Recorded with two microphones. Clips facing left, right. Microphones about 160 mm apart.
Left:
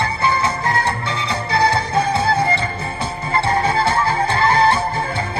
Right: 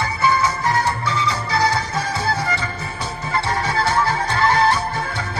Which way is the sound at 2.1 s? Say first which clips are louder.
Left 5 dB; 25° left (ahead or behind).